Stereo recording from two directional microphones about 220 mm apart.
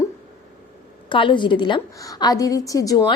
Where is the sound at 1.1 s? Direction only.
20° left (ahead or behind).